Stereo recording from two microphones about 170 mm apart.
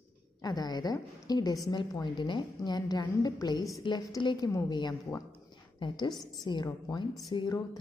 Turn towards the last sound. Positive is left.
turn(degrees=25)  # may be behind; listen again after turning